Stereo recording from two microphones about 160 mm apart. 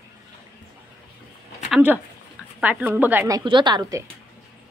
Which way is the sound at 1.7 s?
10° right (ahead or behind).